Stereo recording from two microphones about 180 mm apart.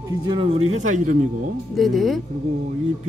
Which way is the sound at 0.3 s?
30° right (ahead or behind).